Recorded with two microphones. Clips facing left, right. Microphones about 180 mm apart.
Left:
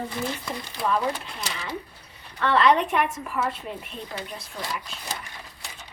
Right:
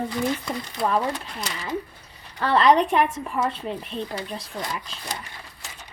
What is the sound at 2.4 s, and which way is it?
Speech, 35° right (ahead or behind).